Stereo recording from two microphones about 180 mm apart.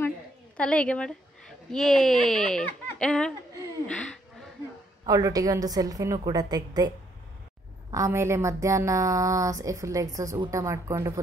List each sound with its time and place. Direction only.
0.6 s a woman's voice: 5° left (ahead or behind)
5.0 s a woman's voice: 20° right (ahead or behind)
7.9 s a woman's voice: 15° right (ahead or behind)